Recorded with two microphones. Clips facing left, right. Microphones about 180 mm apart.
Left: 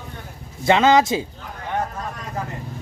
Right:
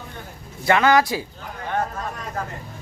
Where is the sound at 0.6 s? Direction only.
20° left (ahead or behind).